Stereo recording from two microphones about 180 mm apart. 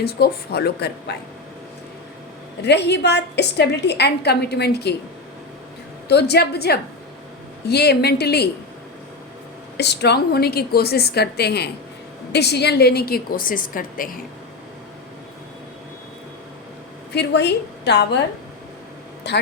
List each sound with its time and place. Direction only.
0.0 s a woman's voice: 60° left (ahead or behind)
2.6 s a woman's voice: 70° left (ahead or behind)
6.1 s a woman's voice: 65° left (ahead or behind)
9.7 s a woman's voice: 70° left (ahead or behind); by 14.2 s 50° left (ahead or behind)
17.1 s a woman's voice: 70° left (ahead or behind)
19.3 s a woman's voice: 70° left (ahead or behind)